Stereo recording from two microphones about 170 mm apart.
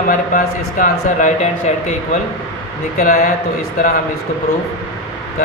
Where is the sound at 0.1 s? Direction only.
50° left (ahead or behind).